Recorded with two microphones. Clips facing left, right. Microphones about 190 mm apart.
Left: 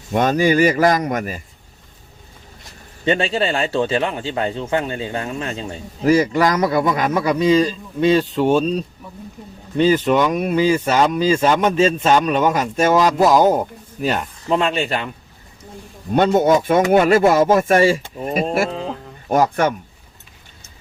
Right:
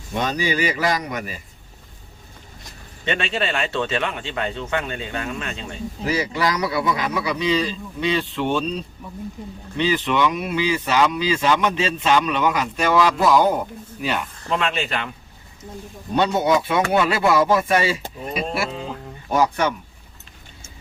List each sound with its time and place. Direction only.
0.1 s speech: 50° left (ahead or behind)
3.0 s a man's voice: 35° left (ahead or behind)
16.1 s speech: 50° left (ahead or behind)